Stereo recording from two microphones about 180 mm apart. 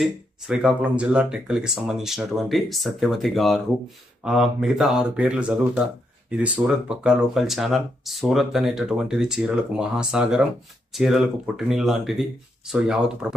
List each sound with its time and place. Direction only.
0.0 s speech: centre (ahead or behind)